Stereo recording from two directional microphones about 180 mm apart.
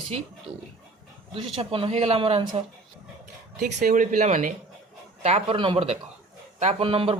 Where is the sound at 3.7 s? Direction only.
45° right (ahead or behind).